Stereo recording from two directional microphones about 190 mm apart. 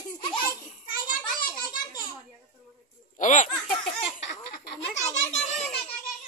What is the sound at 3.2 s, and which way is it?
Baby laughter, 40° left (ahead or behind).